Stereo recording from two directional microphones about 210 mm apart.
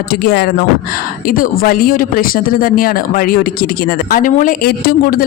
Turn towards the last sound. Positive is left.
turn(degrees=45)  # may be behind; listen again after turning